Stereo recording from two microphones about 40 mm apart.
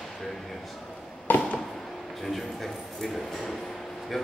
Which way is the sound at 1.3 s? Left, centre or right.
Left.